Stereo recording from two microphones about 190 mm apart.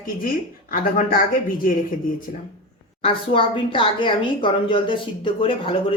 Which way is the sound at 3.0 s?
30° left (ahead or behind).